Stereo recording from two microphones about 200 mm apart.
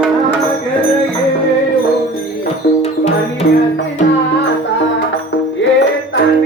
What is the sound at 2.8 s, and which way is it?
Music, 35° left (ahead or behind).